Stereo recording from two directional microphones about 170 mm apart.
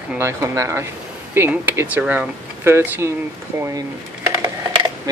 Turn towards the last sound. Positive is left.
turn(degrees=-20)  # may be behind; listen again after turning